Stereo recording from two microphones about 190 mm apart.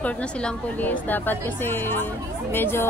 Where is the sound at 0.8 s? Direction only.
10° left (ahead or behind).